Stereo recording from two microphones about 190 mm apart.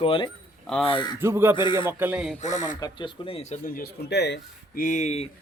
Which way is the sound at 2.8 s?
25° left (ahead or behind).